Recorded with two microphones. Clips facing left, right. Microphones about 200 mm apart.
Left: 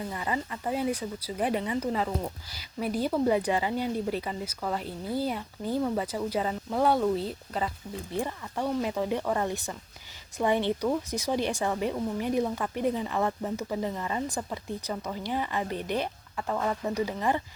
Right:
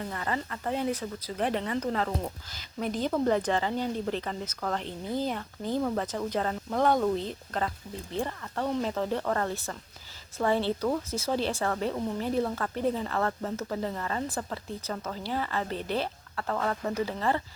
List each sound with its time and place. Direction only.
0.1 s speech: 10° left (ahead or behind)